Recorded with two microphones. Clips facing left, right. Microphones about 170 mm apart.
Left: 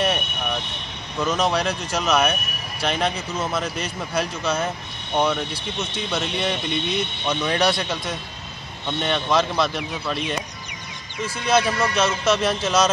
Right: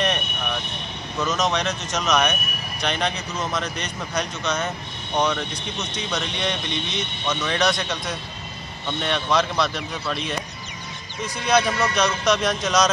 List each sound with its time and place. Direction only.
1.2 s speech: 10° left (ahead or behind)
11.4 s speech: 5° left (ahead or behind)